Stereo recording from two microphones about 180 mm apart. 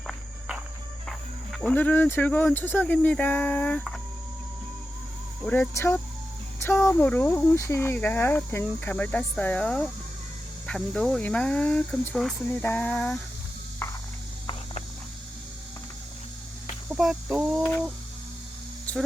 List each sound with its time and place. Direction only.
0.1 s cricket: 5° right (ahead or behind)
1.5 s speech: 10° left (ahead or behind)
5.5 s speech: 10° left (ahead or behind)
16.9 s a sound: centre (ahead or behind)